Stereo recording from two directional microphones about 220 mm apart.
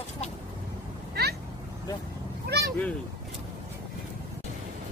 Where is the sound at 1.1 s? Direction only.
45° right (ahead or behind).